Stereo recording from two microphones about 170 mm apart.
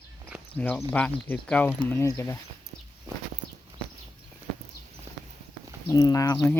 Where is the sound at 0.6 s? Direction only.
10° left (ahead or behind).